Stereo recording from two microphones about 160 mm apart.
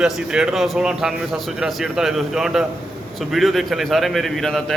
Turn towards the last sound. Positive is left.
turn(degrees=0)  # may be behind; listen again after turning